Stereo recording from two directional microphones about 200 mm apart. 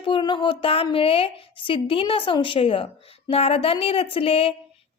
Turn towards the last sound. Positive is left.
turn(degrees=30)  # may be behind; listen again after turning